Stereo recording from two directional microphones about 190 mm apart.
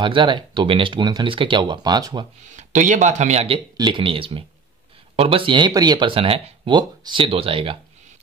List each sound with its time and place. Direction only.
0.0 s speech: 25° right (ahead or behind)
2.5 s speech: 40° right (ahead or behind)